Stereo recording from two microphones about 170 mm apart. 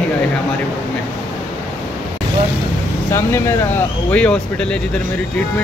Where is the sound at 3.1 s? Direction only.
15° left (ahead or behind).